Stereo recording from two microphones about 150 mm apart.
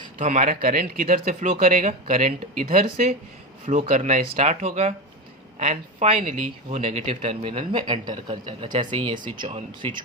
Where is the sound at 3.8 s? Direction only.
50° right (ahead or behind).